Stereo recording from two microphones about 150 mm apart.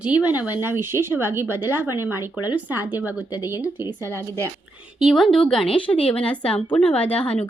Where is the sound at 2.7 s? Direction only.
15° right (ahead or behind).